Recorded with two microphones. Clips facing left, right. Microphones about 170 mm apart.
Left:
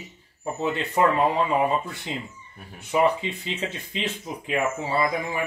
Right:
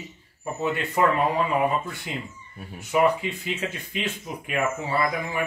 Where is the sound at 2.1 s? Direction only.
25° left (ahead or behind).